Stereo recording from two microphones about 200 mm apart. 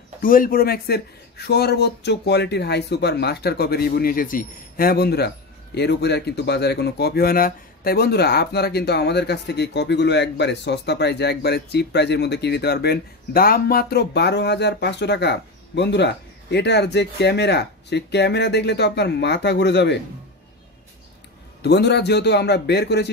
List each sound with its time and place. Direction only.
0.2 s speech: 45° left (ahead or behind); by 20.0 s 60° left (ahead or behind)
21.6 s speech: 55° left (ahead or behind)